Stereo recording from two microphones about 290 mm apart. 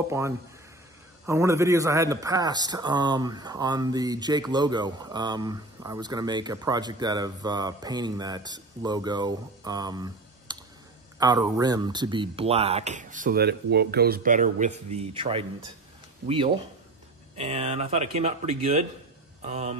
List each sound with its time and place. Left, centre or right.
1.2 s a man's voice: centre
17.4 s speech: right